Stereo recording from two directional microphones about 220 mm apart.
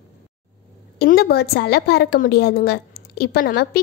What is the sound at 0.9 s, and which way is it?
A woman's voice, 45° left (ahead or behind).